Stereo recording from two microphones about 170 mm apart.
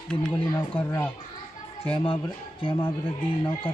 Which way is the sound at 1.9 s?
30° left (ahead or behind).